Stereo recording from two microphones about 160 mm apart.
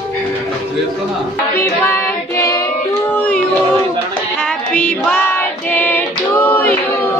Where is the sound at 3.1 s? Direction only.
10° left (ahead or behind).